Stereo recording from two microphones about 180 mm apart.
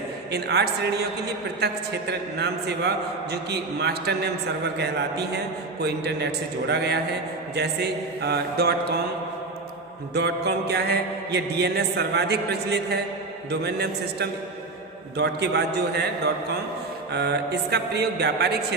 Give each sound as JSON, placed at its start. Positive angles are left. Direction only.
{"t": 0.3, "sound": "mantra", "side_deg": -65}
{"t": 4.8, "sound": "a man's voice", "side_deg": -65}
{"t": 7.5, "sound": "mantra", "side_deg": -65}
{"t": 10.2, "sound": "mantra", "side_deg": -65}